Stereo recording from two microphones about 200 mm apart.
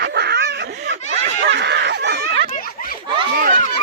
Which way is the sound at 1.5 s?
60° right (ahead or behind).